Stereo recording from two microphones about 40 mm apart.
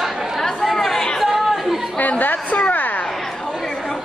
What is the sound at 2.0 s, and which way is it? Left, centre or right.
Chatter, left.